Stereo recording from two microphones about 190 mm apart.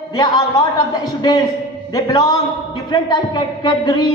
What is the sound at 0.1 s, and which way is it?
A man's voice, 20° left (ahead or behind).